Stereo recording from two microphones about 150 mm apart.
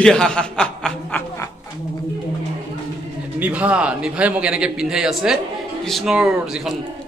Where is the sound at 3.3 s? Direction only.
10° right (ahead or behind).